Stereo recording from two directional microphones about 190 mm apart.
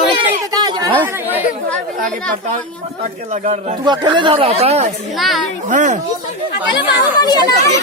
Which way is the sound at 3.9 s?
25° right (ahead or behind).